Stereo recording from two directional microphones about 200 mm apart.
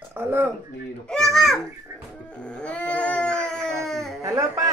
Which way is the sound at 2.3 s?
5° left (ahead or behind).